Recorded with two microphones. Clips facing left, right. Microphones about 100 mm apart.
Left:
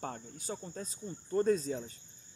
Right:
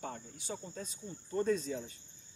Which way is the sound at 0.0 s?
45° left (ahead or behind).